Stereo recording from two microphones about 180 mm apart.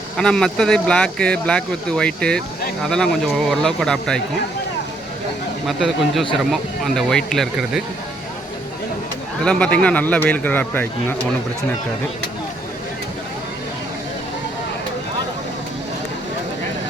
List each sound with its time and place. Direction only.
0.2 s speech: 5° left (ahead or behind)
5.6 s speech: centre (ahead or behind)
9.4 s speech: 5° left (ahead or behind)